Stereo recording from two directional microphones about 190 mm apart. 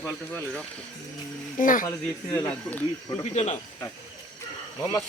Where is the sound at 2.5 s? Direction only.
5° left (ahead or behind).